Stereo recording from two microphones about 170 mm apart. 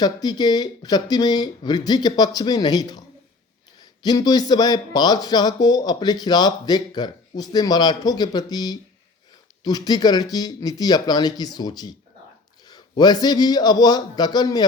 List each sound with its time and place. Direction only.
0.0 s speech: 25° left (ahead or behind)
13.0 s speech: 25° left (ahead or behind)